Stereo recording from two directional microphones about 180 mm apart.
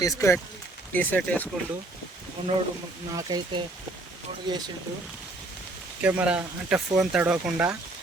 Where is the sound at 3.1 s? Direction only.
20° right (ahead or behind).